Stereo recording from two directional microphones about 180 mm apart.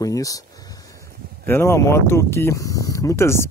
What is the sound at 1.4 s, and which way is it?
Speech, 15° left (ahead or behind).